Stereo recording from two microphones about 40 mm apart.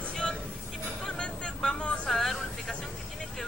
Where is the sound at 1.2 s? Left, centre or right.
Left.